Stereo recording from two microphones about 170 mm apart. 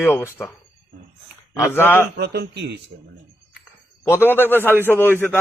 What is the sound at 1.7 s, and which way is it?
Speech, 10° left (ahead or behind).